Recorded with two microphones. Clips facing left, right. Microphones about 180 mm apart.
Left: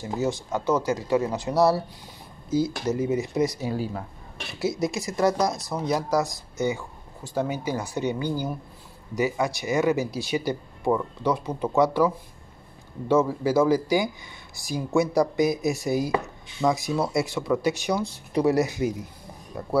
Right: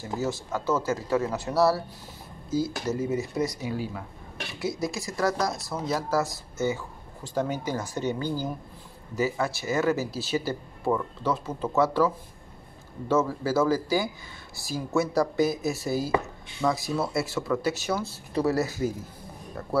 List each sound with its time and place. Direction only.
0.0 s speech: 20° left (ahead or behind)
3.6 s speech: 40° left (ahead or behind)
4.6 s speech: 20° left (ahead or behind)
13.1 s speech: 15° left (ahead or behind)